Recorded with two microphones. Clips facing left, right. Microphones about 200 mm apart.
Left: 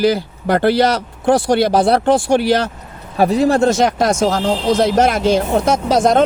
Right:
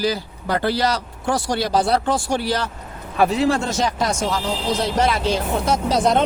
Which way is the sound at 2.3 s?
70° left (ahead or behind).